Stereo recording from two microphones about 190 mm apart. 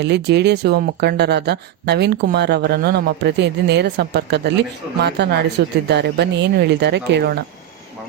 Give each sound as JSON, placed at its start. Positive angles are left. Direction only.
{"t": 0.0, "sound": "speech", "side_deg": -60}